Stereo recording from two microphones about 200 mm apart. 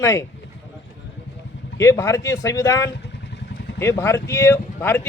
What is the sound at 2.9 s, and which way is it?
Vehicle, 60° left (ahead or behind).